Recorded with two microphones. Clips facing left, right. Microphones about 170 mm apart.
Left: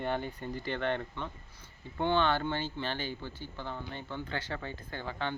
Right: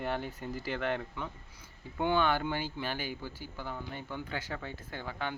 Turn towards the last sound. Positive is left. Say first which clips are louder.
# left 1 dB
turn(degrees=-10)  # may be behind; listen again after turning